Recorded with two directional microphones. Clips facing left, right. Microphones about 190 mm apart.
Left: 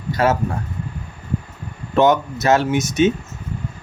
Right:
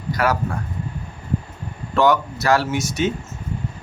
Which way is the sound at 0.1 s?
25° left (ahead or behind).